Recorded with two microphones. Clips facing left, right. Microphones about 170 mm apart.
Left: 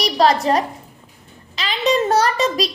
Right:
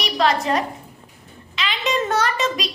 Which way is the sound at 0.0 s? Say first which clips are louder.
Left 4 dB; 35° left (ahead or behind).